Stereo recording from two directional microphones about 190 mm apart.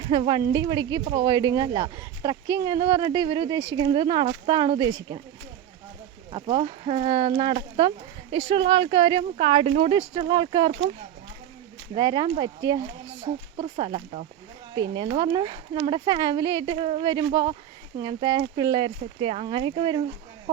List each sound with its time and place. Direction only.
0.0 s speech: 25° right (ahead or behind)
6.3 s speech: 25° right (ahead or behind)
11.9 s speech: 25° right (ahead or behind)